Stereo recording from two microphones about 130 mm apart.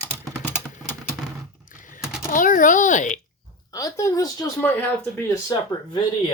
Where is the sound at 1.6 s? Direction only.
90° left.